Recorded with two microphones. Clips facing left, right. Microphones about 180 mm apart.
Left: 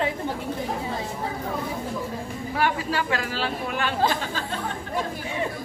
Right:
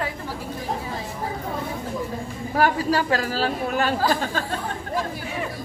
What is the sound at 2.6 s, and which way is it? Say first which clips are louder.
Speech: right 5 dB; 40° right (ahead or behind).